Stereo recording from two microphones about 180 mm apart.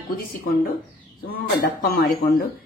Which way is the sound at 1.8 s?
55° left (ahead or behind).